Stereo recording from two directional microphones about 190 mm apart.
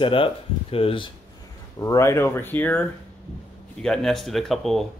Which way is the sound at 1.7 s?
15° left (ahead or behind).